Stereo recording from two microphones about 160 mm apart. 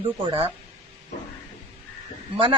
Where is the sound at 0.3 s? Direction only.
35° right (ahead or behind).